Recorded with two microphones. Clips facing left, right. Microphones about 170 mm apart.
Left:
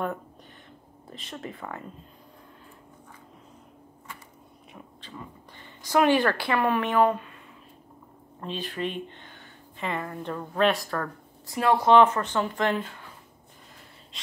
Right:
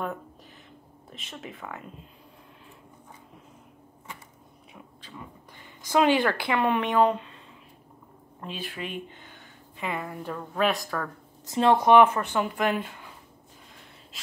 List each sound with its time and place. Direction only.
1.1 s a woman's voice: 5° right (ahead or behind)
5.9 s a woman's voice: 15° right (ahead or behind)
8.4 s a woman's voice: 10° right (ahead or behind)
11.4 s a woman's voice: 20° right (ahead or behind)
14.1 s gasp: 5° right (ahead or behind)